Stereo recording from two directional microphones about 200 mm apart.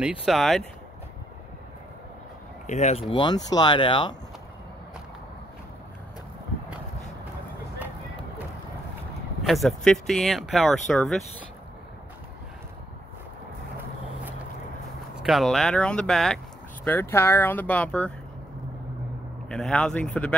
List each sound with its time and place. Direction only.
0.0 s speech: 5° right (ahead or behind)
2.6 s speech: 35° left (ahead or behind)
9.4 s speech: centre (ahead or behind)
15.1 s speech: centre (ahead or behind)
19.5 s speech: 5° left (ahead or behind)